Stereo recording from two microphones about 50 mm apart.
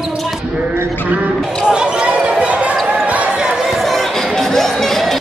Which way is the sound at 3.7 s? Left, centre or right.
Centre.